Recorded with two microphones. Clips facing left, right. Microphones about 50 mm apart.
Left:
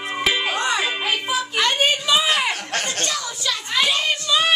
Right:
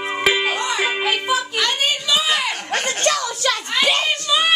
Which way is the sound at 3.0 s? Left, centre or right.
Right.